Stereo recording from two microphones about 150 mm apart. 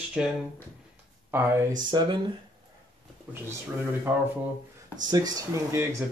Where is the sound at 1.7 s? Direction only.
30° right (ahead or behind).